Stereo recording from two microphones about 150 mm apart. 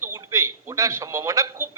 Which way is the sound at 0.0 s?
20° right (ahead or behind).